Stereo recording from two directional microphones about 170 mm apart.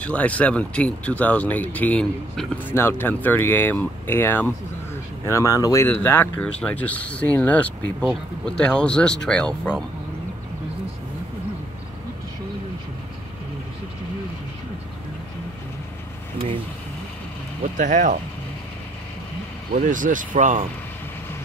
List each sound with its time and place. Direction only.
0.0 s speech: 10° left (ahead or behind)
17.7 s speech: 50° right (ahead or behind)
19.7 s speech: 50° right (ahead or behind)